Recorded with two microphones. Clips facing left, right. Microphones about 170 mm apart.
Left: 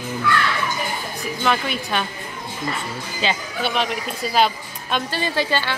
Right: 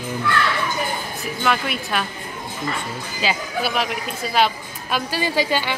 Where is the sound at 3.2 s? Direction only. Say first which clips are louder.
Right 1 dB; 5° right (ahead or behind).